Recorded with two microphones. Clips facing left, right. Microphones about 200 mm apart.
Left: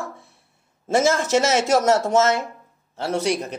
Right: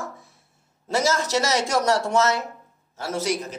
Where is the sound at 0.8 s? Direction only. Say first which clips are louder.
Left 4 dB; 25° left (ahead or behind).